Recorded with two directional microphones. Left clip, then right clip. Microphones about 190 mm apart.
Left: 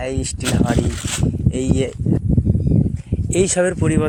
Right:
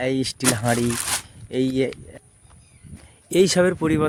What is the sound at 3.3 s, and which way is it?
Speech, 20° right (ahead or behind).